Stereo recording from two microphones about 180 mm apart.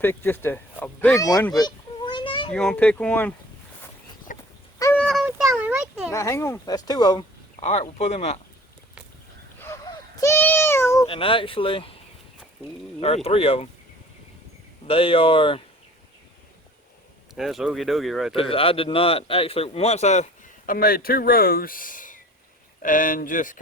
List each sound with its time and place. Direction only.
0.0 s speech: 10° left (ahead or behind)
1.5 s a sound: 25° left (ahead or behind)
2.5 s speech: 5° left (ahead or behind)
4.3 s a sound: 45° left (ahead or behind)
4.9 s a sound: centre (ahead or behind)
6.1 s speech: 15° left (ahead or behind)
7.6 s a man's voice: 35° left (ahead or behind)
9.6 s a sound: 15° left (ahead or behind)
11.0 s speech: 30° left (ahead or behind)
13.0 s a man's voice: 35° left (ahead or behind)
14.8 s a man's voice: 30° left (ahead or behind)
17.3 s speech: centre (ahead or behind)
18.3 s a man's voice: 30° left (ahead or behind); by 23.6 s 50° left (ahead or behind)